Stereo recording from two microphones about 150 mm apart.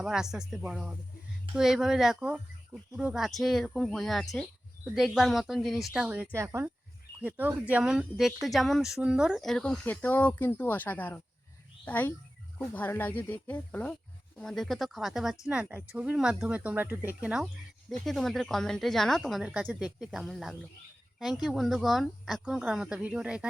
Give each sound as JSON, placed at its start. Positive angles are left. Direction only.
{"t": 0.0, "sound": "speech", "side_deg": -5}
{"t": 6.3, "sound": "speech", "side_deg": -20}